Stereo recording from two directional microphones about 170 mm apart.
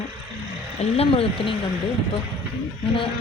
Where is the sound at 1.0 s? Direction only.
35° left (ahead or behind).